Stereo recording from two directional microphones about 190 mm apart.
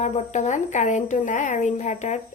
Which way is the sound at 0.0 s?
40° left (ahead or behind).